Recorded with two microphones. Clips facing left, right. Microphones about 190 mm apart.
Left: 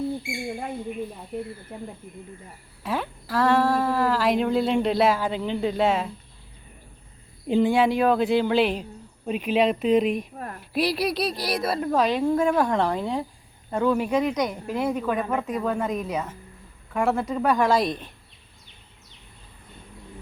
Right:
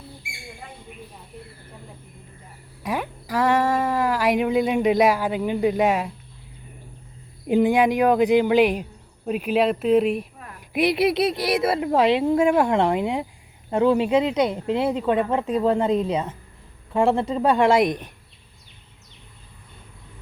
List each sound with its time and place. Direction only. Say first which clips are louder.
2.8 s speech: right 1 dB; 15° right (ahead or behind)
7.4 s speech: right 2 dB; 15° right (ahead or behind)
10.3 s a sound: left 7 dB; 45° left (ahead or behind)
10.7 s speech: right 5 dB; 20° right (ahead or behind)